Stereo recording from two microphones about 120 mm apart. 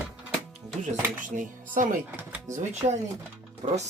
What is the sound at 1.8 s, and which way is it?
Speech, 90° right.